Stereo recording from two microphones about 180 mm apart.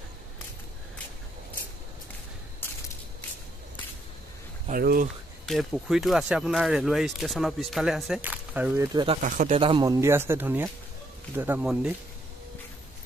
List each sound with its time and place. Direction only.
4.6 s speech: 50° right (ahead or behind)
5.5 s speech: centre (ahead or behind)
8.8 s speech: 25° right (ahead or behind)
9.2 s speech: 45° right (ahead or behind)
9.6 s speech: 30° right (ahead or behind)
9.8 s speech: 15° right (ahead or behind)